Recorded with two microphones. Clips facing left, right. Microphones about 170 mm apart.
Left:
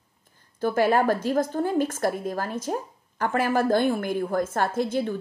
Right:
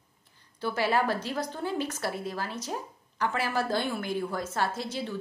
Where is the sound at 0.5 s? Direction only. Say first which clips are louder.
Left 6 dB; 50° left (ahead or behind).